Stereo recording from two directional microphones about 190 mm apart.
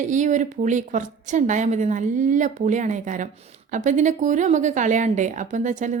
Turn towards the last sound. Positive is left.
turn(degrees=-40)  # may be behind; listen again after turning